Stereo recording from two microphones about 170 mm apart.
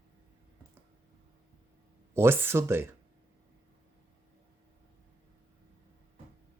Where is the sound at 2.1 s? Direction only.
15° right (ahead or behind).